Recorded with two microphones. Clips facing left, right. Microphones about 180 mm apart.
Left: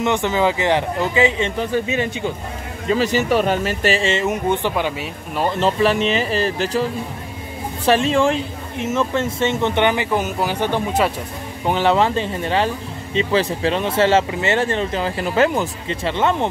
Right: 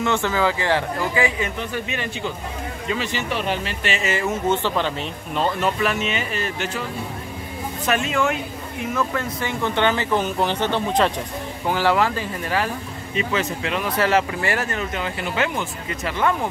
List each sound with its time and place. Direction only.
0.0 s speech: 20° left (ahead or behind)
2.9 s speech: 40° left (ahead or behind); by 5.6 s 10° left (ahead or behind)
5.6 s speech: 30° left (ahead or behind); by 11.1 s 5° left (ahead or behind)
11.6 s speech: 20° left (ahead or behind); by 15.7 s 40° left (ahead or behind)
15.9 s speech: 25° left (ahead or behind)